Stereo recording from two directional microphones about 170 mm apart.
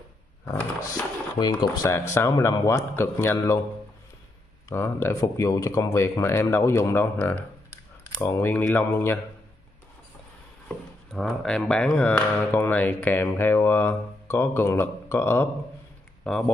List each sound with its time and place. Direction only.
0.5 s a sound: 10° left (ahead or behind)
1.4 s speech: 20° left (ahead or behind)
4.6 s speech: 15° left (ahead or behind)
11.1 s speech: centre (ahead or behind)